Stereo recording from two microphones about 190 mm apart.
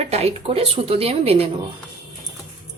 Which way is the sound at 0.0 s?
35° right (ahead or behind).